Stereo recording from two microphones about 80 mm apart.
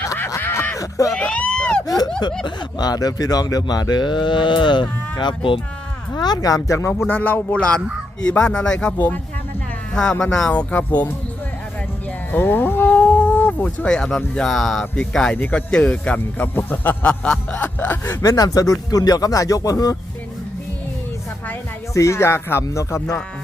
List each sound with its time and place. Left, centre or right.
0.3 s a sound: left
0.8 s a sound: left
1.1 s speech: centre
2.4 s speech: left
6.1 s speech: left
7.1 s a man's voice: left
8.2 s speech: centre
12.3 s a man's voice: left; by 17.6 s centre
17.6 s a sound: left
18.2 s speech: left
21.9 s speech: left